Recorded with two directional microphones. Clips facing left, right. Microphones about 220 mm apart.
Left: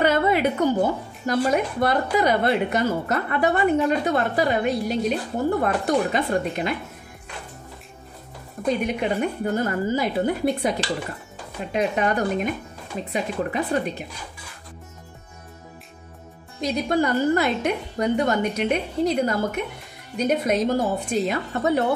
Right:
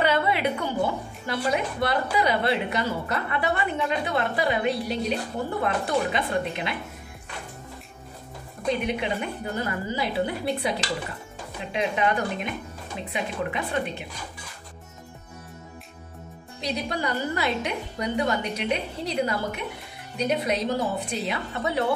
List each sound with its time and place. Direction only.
0.0 s a sound: 45° left (ahead or behind)
1.2 s a woman's voice: 45° left (ahead or behind)
8.8 s a woman's voice: 45° left (ahead or behind)
16.6 s a woman's voice: 45° left (ahead or behind)